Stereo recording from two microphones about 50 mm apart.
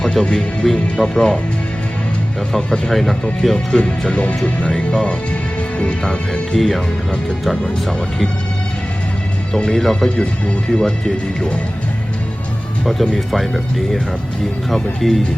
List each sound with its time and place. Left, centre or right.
0.0 s music: centre
0.6 s speech: centre
2.5 s speech: centre
2.9 s speech: centre
3.8 s music: left
5.8 s music: centre
6.6 s speech: centre
9.7 s speech: centre
10.2 s speech: centre
12.8 s speech: centre
14.7 s speech: centre